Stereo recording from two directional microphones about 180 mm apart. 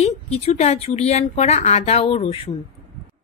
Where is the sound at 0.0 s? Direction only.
35° left (ahead or behind).